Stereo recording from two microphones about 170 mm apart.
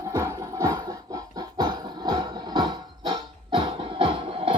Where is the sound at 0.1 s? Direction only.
20° right (ahead or behind).